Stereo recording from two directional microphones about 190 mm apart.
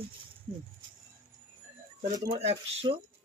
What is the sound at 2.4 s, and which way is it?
Speech, 30° right (ahead or behind).